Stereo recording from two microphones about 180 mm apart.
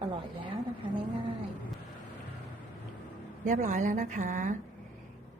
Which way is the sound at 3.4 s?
45° right (ahead or behind).